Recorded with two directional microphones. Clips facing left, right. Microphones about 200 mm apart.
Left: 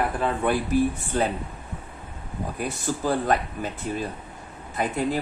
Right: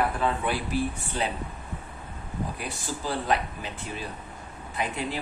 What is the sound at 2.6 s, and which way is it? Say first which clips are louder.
Speech: left 6 dB; 45° left (ahead or behind).